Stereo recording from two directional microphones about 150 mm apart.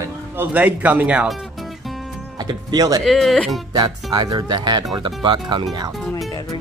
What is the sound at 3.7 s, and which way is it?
Speech, 25° right (ahead or behind).